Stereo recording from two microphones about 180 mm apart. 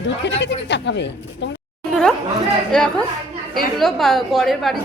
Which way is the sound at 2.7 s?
5° left (ahead or behind).